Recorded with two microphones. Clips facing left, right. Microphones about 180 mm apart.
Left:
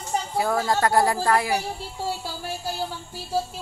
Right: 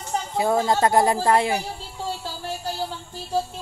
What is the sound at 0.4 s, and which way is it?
A woman's voice, 20° right (ahead or behind).